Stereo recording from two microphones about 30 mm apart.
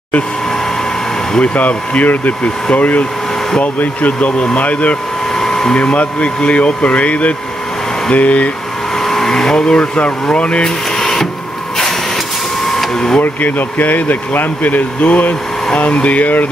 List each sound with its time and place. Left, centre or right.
1.4 s speech: left
4.2 s speech: left
4.6 s speech: left
5.3 s hair dryer: centre
5.8 s speech: left
8.9 s hair dryer: centre
9.8 s speech: left
11.0 s printer: centre
12.6 s a sound: centre
12.9 s speech: left
13.2 s speech: left
15.8 s speech: left